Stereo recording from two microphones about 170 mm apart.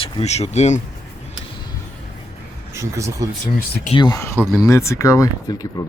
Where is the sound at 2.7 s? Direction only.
15° right (ahead or behind).